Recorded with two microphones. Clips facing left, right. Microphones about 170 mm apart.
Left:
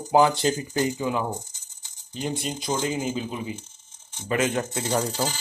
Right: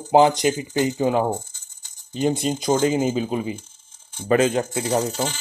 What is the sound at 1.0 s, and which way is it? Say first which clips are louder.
Speech: right 7 dB; 40° right (ahead or behind).